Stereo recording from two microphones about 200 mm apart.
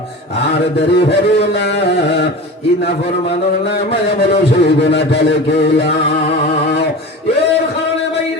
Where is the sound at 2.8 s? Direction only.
55° left (ahead or behind).